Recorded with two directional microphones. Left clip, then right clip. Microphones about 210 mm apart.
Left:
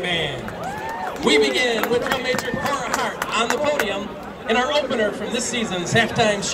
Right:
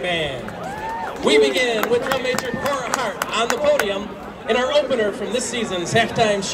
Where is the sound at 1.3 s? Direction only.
50° right (ahead or behind).